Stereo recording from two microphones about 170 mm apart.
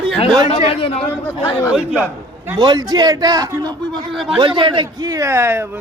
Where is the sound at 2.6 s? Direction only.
25° right (ahead or behind).